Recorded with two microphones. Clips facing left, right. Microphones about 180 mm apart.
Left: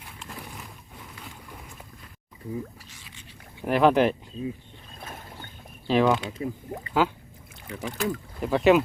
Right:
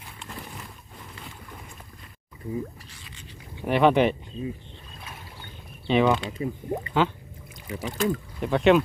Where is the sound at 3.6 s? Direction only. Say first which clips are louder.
Even; centre (ahead or behind).